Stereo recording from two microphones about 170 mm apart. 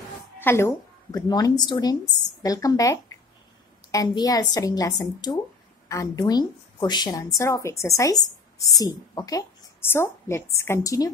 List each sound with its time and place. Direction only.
0.4 s a woman's voice: 15° left (ahead or behind)